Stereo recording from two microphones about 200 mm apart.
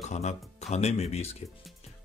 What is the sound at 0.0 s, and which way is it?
Speech, 35° left (ahead or behind).